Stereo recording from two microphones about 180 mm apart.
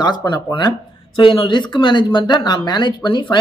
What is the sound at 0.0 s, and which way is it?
A man's voice, 25° left (ahead or behind).